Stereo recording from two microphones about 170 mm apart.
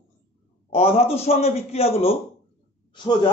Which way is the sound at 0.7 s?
35° left (ahead or behind).